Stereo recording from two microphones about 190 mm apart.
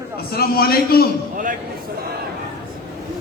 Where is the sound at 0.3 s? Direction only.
55° left (ahead or behind).